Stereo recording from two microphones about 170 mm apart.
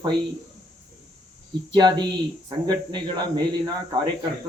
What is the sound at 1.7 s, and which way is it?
Speech, 25° right (ahead or behind).